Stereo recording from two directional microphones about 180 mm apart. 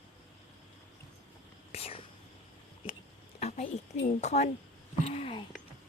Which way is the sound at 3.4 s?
40° left (ahead or behind).